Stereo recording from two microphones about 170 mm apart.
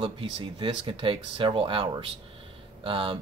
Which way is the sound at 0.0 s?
30° right (ahead or behind).